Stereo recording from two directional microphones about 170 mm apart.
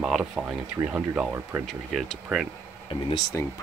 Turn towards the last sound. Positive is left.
turn(degrees=30)  # may be behind; listen again after turning